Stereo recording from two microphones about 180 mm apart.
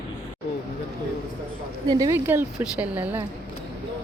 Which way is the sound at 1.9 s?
15° right (ahead or behind).